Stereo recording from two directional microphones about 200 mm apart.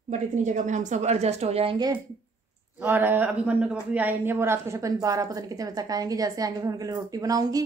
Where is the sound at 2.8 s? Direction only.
10° right (ahead or behind).